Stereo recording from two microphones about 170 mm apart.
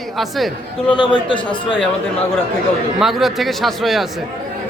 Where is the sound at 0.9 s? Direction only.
30° left (ahead or behind).